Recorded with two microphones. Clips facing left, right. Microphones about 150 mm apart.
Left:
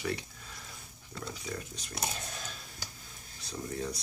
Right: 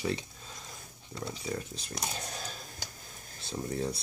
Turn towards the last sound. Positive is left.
turn(degrees=-30)  # may be behind; listen again after turning